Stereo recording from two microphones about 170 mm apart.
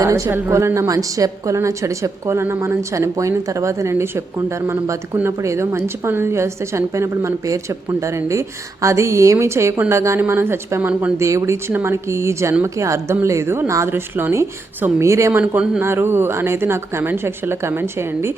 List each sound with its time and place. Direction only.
0.0 s a woman's voice: 15° right (ahead or behind)